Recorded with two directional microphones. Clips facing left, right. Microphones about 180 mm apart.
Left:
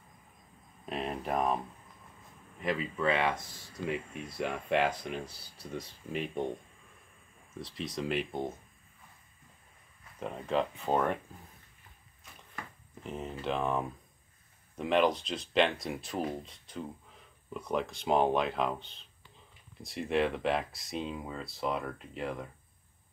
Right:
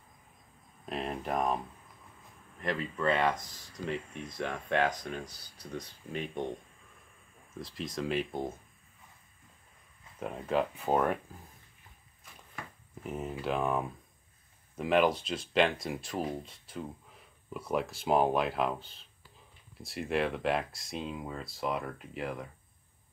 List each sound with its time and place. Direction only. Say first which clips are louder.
0.8 s a sound: even; centre (ahead or behind)
2.6 s speech: left 1 dB; 5° left (ahead or behind)
7.5 s speech: even; centre (ahead or behind)
10.2 s speech: right 1 dB; 5° right (ahead or behind)
13.0 s speech: right 1 dB; 5° right (ahead or behind)